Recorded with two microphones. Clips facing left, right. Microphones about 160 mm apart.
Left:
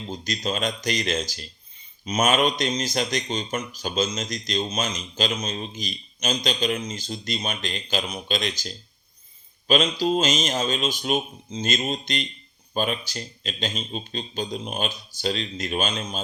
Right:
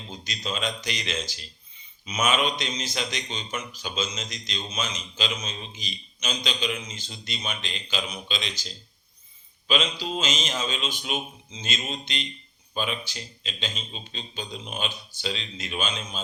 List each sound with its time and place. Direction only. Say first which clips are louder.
0.1 s speech: left 5 dB; 40° left (ahead or behind)